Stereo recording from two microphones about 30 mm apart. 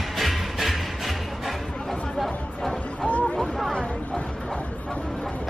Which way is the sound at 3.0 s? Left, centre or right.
Left.